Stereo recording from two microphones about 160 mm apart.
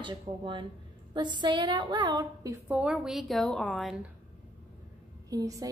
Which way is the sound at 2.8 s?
5° right (ahead or behind).